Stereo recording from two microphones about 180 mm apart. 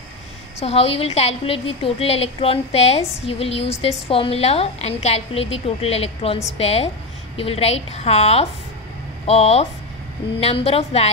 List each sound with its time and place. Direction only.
0.6 s a woman's voice: 35° left (ahead or behind)